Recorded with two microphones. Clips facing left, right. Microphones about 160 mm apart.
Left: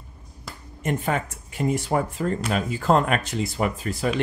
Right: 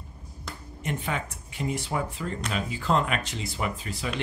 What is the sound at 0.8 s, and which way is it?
Speech, 45° left (ahead or behind).